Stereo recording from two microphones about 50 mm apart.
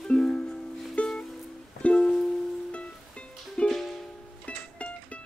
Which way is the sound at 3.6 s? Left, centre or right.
Left.